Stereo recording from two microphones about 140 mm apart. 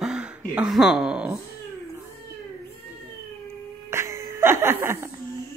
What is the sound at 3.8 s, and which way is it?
Music, 20° right (ahead or behind).